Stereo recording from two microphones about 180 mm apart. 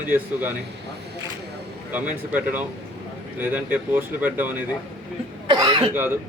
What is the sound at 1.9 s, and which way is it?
A man's voice, 10° right (ahead or behind).